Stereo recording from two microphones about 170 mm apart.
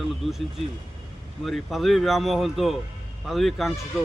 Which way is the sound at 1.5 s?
Centre (ahead or behind).